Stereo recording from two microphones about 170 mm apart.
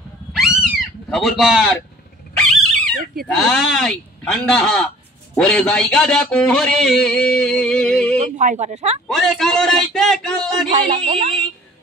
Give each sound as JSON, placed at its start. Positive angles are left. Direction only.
{"t": 0.3, "sound": "cat", "side_deg": -5}
{"t": 2.3, "sound": "dog", "side_deg": 5}
{"t": 3.4, "sound": "speech", "side_deg": 5}
{"t": 8.2, "sound": "speech", "side_deg": -45}
{"t": 9.0, "sound": "speech", "side_deg": 0}
{"t": 10.7, "sound": "a sound", "side_deg": -40}